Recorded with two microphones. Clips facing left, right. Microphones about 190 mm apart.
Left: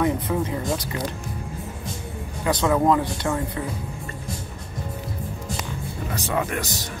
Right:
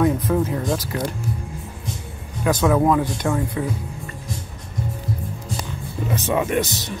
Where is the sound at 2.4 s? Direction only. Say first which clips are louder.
Right 2 dB; 10° right (ahead or behind).